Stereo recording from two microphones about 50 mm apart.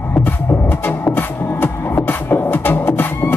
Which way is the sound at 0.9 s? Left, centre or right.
Left.